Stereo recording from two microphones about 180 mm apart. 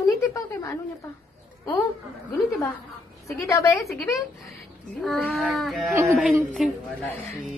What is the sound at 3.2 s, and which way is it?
Speech, 15° left (ahead or behind).